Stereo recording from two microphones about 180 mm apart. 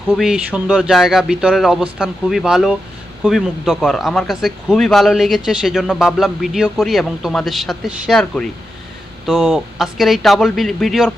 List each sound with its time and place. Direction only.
0.1 s speech: centre (ahead or behind)